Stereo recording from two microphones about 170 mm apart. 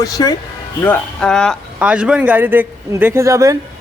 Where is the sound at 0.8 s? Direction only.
10° left (ahead or behind); by 3.6 s 20° right (ahead or behind).